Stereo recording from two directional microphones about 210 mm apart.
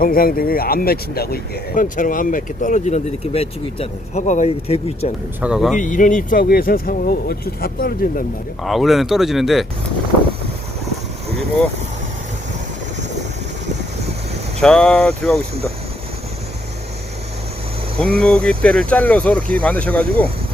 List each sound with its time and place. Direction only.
0.0 s speech: 45° left (ahead or behind); by 5.1 s 30° left (ahead or behind)
5.4 s speech: 5° right (ahead or behind)
5.7 s speech: 35° left (ahead or behind)
8.6 s speech: centre (ahead or behind)
14.6 s speech: 5° left (ahead or behind)
18.0 s speech: 5° left (ahead or behind)